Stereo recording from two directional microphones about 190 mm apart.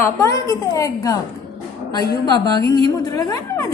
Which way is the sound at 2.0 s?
20° left (ahead or behind).